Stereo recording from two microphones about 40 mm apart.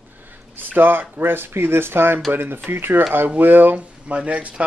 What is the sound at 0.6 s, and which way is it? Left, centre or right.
Speech, right.